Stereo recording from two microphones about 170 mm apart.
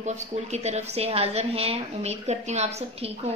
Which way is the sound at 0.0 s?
40° right (ahead or behind).